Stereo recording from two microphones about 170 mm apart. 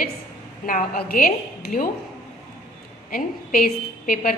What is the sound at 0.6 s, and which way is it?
A woman's voice, 60° left (ahead or behind).